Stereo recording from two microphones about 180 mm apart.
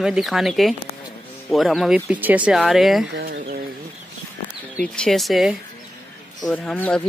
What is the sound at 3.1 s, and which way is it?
Chicken, 65° right (ahead or behind).